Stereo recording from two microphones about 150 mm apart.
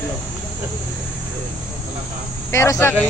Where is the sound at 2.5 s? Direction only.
20° left (ahead or behind).